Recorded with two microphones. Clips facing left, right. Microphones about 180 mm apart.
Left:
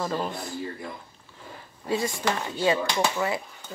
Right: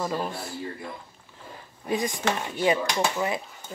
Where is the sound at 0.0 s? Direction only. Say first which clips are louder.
Even; 5° right (ahead or behind).